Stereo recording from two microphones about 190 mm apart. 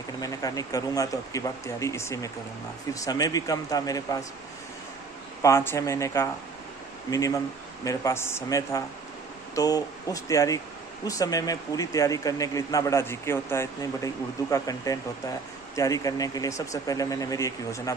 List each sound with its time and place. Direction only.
0.2 s speech: 20° left (ahead or behind)
5.4 s speech: 15° left (ahead or behind)